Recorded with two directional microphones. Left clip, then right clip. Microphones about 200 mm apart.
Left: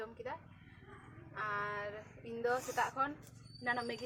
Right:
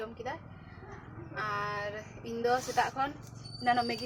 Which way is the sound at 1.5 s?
10° right (ahead or behind).